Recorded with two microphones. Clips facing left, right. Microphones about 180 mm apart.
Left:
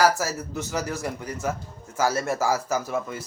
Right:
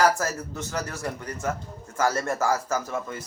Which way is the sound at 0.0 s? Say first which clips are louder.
Left 1 dB; 10° left (ahead or behind).